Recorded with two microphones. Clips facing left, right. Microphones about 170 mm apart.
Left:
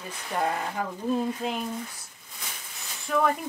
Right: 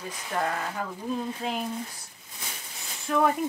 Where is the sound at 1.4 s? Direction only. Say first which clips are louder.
Left 1 dB; centre (ahead or behind).